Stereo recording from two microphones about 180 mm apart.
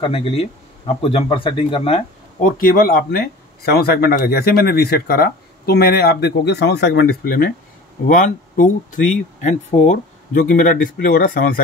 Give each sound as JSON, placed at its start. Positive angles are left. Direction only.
{"t": 0.0, "sound": "speech", "side_deg": 30}
{"t": 2.4, "sound": "speech", "side_deg": 55}
{"t": 8.1, "sound": "speech", "side_deg": 45}